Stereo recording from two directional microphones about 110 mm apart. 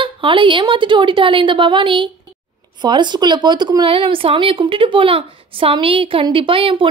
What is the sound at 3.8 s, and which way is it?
A woman's voice, 55° right (ahead or behind).